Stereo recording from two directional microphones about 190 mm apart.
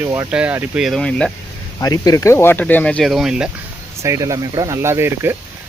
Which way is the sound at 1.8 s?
20° left (ahead or behind).